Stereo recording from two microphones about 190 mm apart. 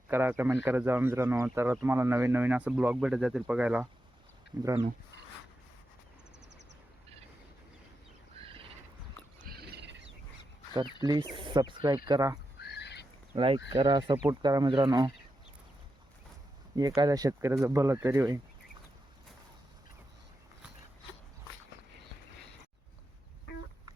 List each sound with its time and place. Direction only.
0.1 s speech: 10° right (ahead or behind)
4.5 s speech: 20° right (ahead or behind)
9.5 s wild animals: 60° right (ahead or behind)
11.0 s speech: 20° right (ahead or behind)
12.5 s a sound: 60° left (ahead or behind)
13.3 s speech: 30° right (ahead or behind)
16.7 s speech: 20° right (ahead or behind)